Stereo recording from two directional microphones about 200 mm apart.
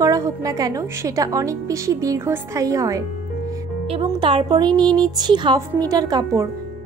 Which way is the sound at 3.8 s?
30° right (ahead or behind).